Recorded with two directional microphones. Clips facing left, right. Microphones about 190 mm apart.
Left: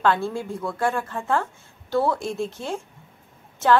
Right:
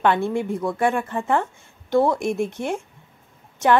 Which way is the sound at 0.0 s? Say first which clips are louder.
Right 2 dB; 20° right (ahead or behind).